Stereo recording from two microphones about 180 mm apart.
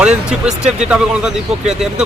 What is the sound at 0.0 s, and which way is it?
Speech, 5° right (ahead or behind).